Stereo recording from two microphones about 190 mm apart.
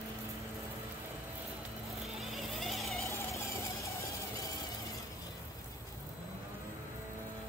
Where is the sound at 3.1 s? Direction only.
15° left (ahead or behind).